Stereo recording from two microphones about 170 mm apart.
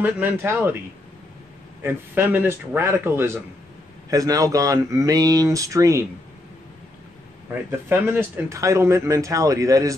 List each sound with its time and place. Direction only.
0.0 s speech: 10° right (ahead or behind)
1.8 s speech: 15° right (ahead or behind)
7.9 s speech: 15° right (ahead or behind)